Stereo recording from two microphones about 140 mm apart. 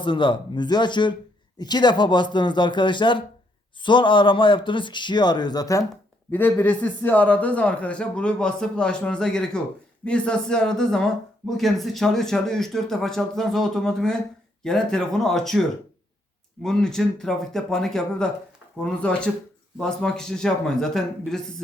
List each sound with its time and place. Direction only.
0.0 s a man's voice: 35° left (ahead or behind)
6.3 s a man's voice: 15° left (ahead or behind)
16.6 s a man's voice: 5° left (ahead or behind)